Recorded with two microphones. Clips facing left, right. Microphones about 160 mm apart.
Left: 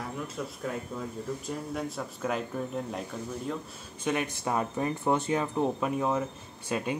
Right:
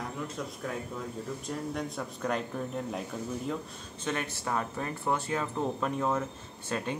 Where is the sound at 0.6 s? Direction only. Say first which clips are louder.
Left 3 dB; 5° left (ahead or behind).